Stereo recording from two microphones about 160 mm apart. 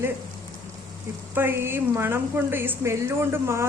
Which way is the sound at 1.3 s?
15° right (ahead or behind).